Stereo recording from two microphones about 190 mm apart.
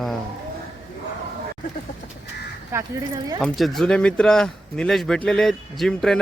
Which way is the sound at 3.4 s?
Centre (ahead or behind).